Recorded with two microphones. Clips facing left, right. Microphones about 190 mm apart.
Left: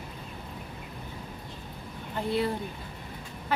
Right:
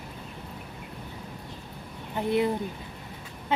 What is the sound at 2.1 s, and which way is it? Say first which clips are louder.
Speech: right 3 dB; 15° right (ahead or behind).